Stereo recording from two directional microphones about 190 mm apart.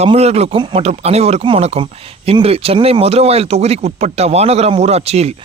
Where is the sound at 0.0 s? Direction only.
35° right (ahead or behind).